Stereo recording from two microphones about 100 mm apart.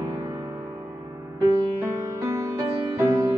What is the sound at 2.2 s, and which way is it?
Music, 30° right (ahead or behind).